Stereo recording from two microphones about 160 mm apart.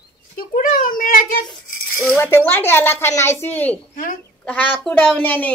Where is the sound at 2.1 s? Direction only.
15° left (ahead or behind).